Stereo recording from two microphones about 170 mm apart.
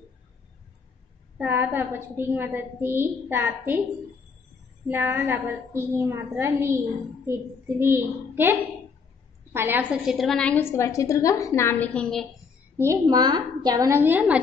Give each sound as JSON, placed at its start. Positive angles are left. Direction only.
{"t": 1.4, "sound": "a woman's voice", "side_deg": -10}
{"t": 4.8, "sound": "a woman's voice", "side_deg": -10}
{"t": 7.8, "sound": "a woman's voice", "side_deg": -15}
{"t": 12.7, "sound": "a woman's voice", "side_deg": -15}